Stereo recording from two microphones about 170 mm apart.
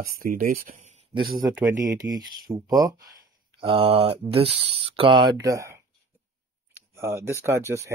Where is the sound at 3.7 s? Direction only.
35° right (ahead or behind).